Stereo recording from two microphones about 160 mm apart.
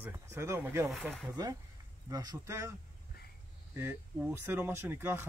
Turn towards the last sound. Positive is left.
turn(degrees=-15)  # may be behind; listen again after turning